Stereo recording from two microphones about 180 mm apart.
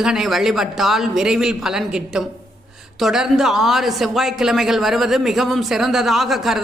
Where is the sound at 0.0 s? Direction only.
Centre (ahead or behind).